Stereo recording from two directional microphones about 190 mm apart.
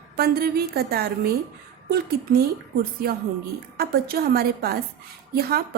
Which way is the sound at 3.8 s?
55° right (ahead or behind).